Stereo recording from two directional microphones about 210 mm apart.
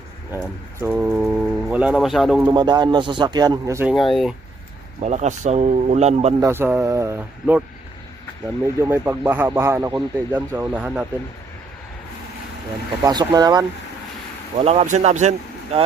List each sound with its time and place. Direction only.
0.3 s speech: 10° right (ahead or behind)
2.5 s speech: 20° right (ahead or behind)
3.9 s speech: centre (ahead or behind)
4.9 s speech: 35° right (ahead or behind)
6.4 s speech: 10° right (ahead or behind)
8.6 s speech: 10° right (ahead or behind)
13.1 s speech: 20° right (ahead or behind)
14.6 s speech: 30° right (ahead or behind)